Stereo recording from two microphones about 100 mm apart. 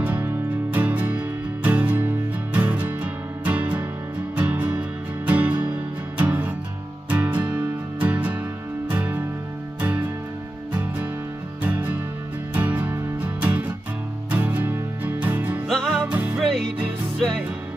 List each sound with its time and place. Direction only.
0.0 s music: 15° right (ahead or behind)
15.7 s music: 5° left (ahead or behind)
16.1 s music: 15° right (ahead or behind)
16.4 s music: centre (ahead or behind)